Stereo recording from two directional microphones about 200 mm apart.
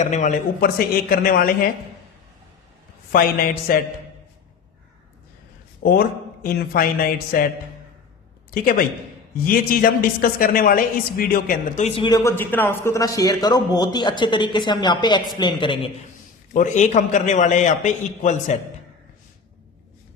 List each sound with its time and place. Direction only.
0.0 s a man's voice: 35° left (ahead or behind)
3.1 s a man's voice: 45° left (ahead or behind)
5.8 s a man's voice: 50° left (ahead or behind)
9.5 s speech: 45° left (ahead or behind); by 15.9 s 25° left (ahead or behind)
16.5 s a man's voice: 40° left (ahead or behind)